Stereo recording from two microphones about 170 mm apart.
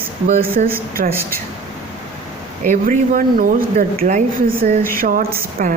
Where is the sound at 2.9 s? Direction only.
55° right (ahead or behind).